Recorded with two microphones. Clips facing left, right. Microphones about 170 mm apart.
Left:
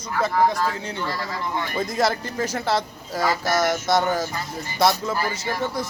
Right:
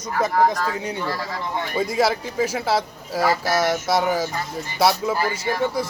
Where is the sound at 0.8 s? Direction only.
15° right (ahead or behind).